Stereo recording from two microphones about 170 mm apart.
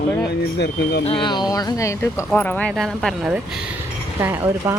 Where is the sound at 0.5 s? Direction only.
75° left (ahead or behind).